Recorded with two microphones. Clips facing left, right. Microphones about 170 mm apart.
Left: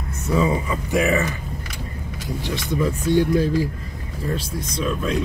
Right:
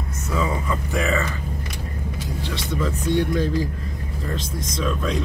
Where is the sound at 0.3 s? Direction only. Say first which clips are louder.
Left 4 dB; 20° left (ahead or behind).